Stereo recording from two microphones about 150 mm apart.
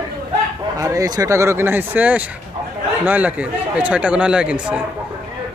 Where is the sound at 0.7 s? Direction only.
20° right (ahead or behind).